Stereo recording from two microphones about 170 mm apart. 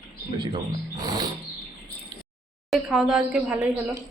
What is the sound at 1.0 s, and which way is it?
Speech, 25° right (ahead or behind).